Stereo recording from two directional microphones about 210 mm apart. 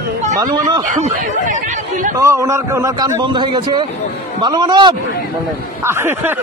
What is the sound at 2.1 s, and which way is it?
A man's voice, 15° right (ahead or behind).